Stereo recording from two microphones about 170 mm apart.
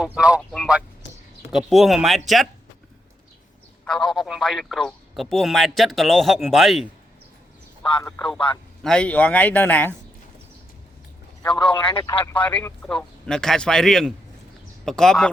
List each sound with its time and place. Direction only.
0.0 s speech: 5° right (ahead or behind)
3.8 s speech: 5° left (ahead or behind)
8.0 s a man's voice: 5° left (ahead or behind)
11.4 s a man's voice: 25° left (ahead or behind)
12.2 s speech: 10° left (ahead or behind)